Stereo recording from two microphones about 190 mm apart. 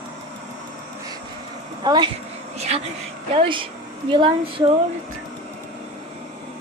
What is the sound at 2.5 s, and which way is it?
A woman's voice, 35° right (ahead or behind).